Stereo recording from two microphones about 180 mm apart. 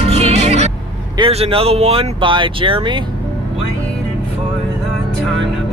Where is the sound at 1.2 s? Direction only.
30° right (ahead or behind).